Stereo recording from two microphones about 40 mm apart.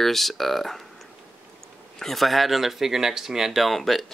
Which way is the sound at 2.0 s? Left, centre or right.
Centre.